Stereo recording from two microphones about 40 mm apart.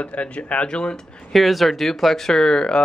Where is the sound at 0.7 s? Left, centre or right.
Left.